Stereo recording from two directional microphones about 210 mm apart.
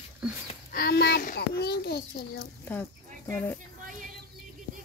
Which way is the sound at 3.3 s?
10° left (ahead or behind).